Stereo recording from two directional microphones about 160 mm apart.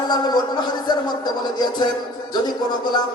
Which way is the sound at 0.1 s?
25° left (ahead or behind).